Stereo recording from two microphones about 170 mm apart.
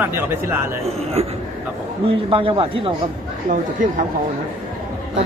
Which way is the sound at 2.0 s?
30° right (ahead or behind).